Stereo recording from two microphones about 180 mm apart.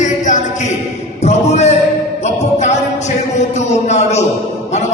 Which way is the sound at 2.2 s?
40° left (ahead or behind).